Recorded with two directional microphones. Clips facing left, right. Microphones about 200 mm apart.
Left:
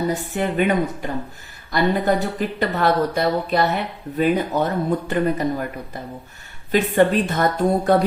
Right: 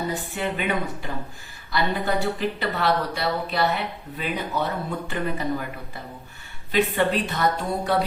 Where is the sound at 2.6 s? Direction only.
45° left (ahead or behind).